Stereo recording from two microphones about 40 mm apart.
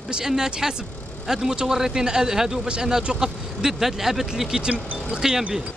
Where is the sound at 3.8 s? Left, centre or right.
Centre.